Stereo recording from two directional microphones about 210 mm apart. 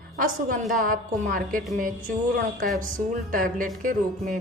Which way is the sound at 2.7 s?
40° right (ahead or behind).